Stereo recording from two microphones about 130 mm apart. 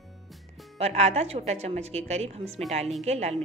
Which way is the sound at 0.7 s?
55° right (ahead or behind).